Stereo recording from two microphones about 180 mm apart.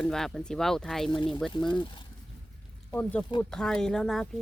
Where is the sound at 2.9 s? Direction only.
10° left (ahead or behind).